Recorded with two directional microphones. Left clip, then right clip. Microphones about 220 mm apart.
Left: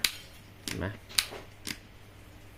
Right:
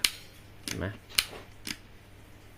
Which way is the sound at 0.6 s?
Centre (ahead or behind).